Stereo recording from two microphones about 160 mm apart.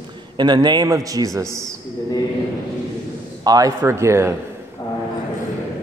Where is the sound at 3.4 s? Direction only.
20° right (ahead or behind).